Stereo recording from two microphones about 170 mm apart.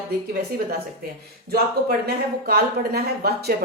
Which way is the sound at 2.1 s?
65° right (ahead or behind).